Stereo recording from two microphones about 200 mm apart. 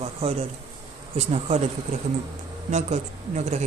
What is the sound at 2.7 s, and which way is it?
Speech, 35° right (ahead or behind).